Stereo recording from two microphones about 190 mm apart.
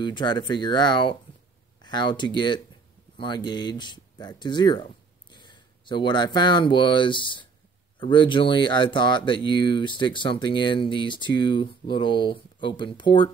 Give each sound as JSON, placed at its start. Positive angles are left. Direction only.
{"t": 0.0, "sound": "speech", "side_deg": 25}